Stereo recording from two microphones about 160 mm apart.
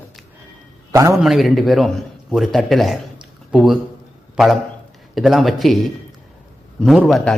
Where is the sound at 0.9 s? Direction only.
20° right (ahead or behind).